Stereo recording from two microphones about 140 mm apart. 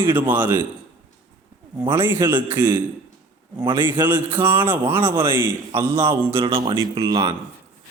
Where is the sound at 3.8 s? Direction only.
15° right (ahead or behind).